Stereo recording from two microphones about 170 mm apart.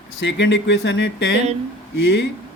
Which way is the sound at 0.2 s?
90° left.